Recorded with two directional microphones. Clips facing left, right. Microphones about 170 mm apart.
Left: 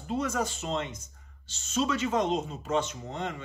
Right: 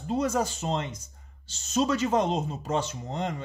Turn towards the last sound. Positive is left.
turn(degrees=-40)  # may be behind; listen again after turning